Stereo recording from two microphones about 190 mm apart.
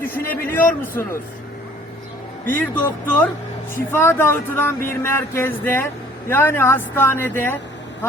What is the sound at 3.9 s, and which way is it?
A man's voice, 10° left (ahead or behind).